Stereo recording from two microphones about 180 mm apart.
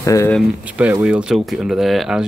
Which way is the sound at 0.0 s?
15° left (ahead or behind).